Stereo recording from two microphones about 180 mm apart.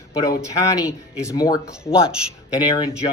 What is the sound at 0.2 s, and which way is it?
Speech, 20° left (ahead or behind).